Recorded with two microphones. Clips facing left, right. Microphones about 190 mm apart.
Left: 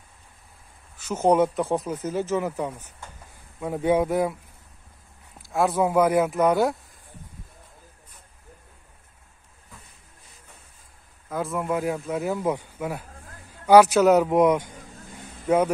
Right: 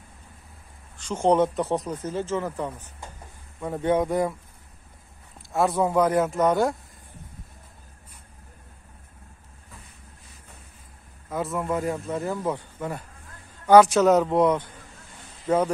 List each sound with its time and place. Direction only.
0.9 s speech: 5° left (ahead or behind)
5.5 s speech: centre (ahead or behind)
11.2 s speech: centre (ahead or behind)